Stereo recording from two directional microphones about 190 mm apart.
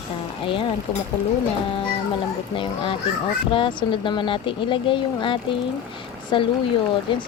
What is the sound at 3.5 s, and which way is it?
Speech, 25° left (ahead or behind).